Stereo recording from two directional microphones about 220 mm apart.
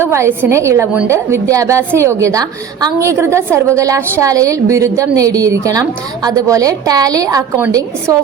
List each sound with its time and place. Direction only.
0.0 s a woman's voice: 10° right (ahead or behind)